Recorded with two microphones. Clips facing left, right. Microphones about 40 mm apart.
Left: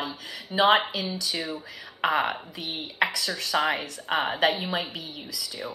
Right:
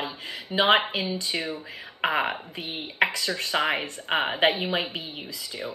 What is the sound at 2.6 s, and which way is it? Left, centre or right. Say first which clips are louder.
Speech: right 1 dB; right.